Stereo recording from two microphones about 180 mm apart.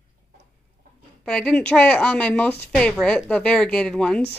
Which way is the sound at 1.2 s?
5° left (ahead or behind).